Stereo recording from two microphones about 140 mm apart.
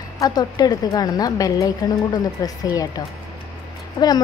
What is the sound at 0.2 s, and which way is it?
A woman's voice, 30° left (ahead or behind).